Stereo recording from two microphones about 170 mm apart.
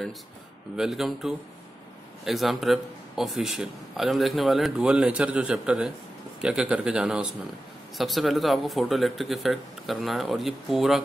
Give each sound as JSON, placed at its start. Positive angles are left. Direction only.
{"t": 0.7, "sound": "speech", "side_deg": 0}